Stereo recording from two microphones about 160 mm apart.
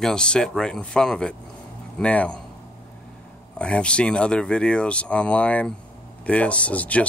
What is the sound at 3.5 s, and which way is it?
Speech, 5° left (ahead or behind).